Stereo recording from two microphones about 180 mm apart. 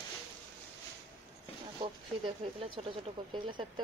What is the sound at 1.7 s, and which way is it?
Speech, 30° right (ahead or behind).